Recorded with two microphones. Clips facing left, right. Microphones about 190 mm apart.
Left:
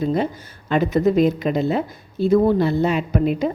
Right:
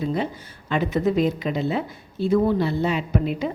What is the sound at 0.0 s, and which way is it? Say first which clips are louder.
A woman's voice: left 4 dB; 45° left (ahead or behind).